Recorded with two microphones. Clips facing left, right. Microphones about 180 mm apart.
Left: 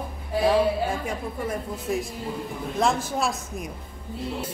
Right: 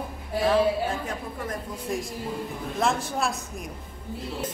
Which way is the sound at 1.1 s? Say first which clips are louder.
Left 3 dB; 10° left (ahead or behind).